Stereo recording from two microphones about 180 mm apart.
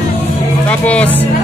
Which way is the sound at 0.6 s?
10° left (ahead or behind).